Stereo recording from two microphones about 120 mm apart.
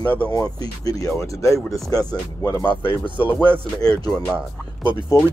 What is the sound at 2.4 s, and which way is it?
Speech, 40° left (ahead or behind).